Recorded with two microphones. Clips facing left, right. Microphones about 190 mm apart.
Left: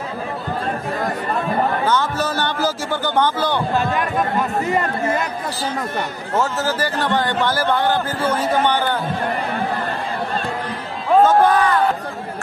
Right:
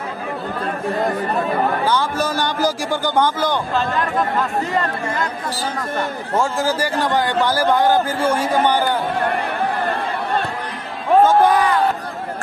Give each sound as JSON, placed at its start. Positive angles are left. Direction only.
{"t": 1.9, "sound": "a man's voice", "side_deg": -10}
{"t": 3.7, "sound": "speech", "side_deg": 15}
{"t": 6.3, "sound": "a man's voice", "side_deg": -10}
{"t": 11.2, "sound": "a man's voice", "side_deg": -10}